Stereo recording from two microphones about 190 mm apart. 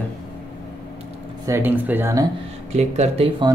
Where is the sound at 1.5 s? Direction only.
10° right (ahead or behind).